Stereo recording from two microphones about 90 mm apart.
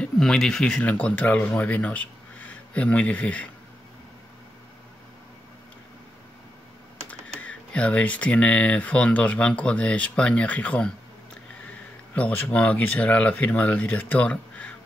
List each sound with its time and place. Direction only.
0.0 s speech: 5° left (ahead or behind)
7.1 s speech: 15° left (ahead or behind)
12.2 s speech: 15° left (ahead or behind)